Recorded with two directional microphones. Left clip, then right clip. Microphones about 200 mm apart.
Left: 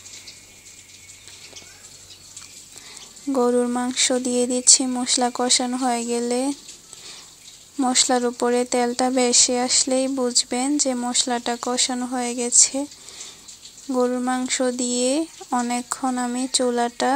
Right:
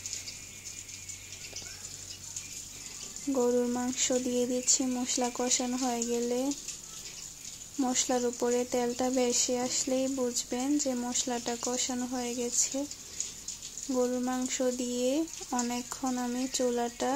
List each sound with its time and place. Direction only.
3.3 s speech: 25° left (ahead or behind)
7.8 s speech: 20° left (ahead or behind)
13.8 s speech: 20° left (ahead or behind)